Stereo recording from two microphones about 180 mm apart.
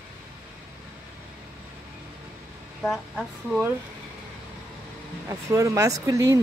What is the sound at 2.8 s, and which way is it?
Speech, 5° right (ahead or behind).